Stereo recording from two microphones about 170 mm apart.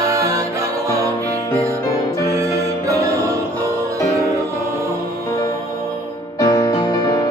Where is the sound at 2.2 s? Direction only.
15° right (ahead or behind).